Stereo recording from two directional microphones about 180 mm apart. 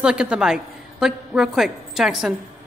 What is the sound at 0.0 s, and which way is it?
A woman's voice, 5° right (ahead or behind).